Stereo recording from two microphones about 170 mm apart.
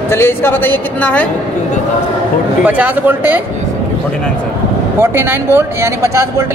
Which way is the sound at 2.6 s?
10° right (ahead or behind).